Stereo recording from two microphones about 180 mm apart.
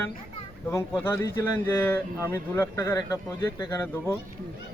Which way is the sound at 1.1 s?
15° left (ahead or behind).